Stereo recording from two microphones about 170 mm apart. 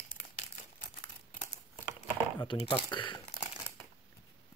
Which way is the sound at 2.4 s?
30° left (ahead or behind).